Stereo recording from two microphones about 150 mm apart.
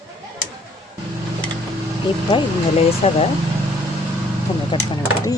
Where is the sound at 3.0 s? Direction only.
45° left (ahead or behind).